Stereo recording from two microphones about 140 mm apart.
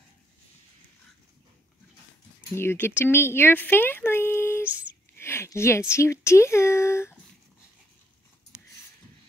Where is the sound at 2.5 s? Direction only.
15° left (ahead or behind).